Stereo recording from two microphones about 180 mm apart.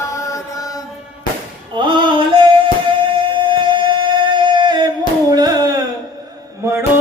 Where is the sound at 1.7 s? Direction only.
25° right (ahead or behind).